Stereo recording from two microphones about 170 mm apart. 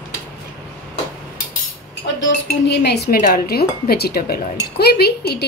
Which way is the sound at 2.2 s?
80° left.